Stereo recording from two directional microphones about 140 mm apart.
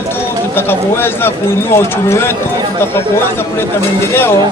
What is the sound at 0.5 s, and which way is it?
A man's voice, 15° left (ahead or behind).